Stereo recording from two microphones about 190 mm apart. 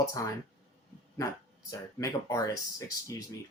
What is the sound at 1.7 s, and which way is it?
Speech, 15° left (ahead or behind).